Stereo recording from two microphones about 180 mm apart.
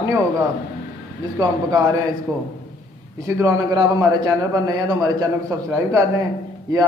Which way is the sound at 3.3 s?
15° right (ahead or behind).